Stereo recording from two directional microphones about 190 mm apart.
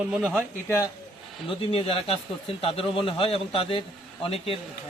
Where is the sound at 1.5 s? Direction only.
30° left (ahead or behind).